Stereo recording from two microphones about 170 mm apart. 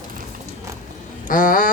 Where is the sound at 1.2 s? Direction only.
55° left (ahead or behind).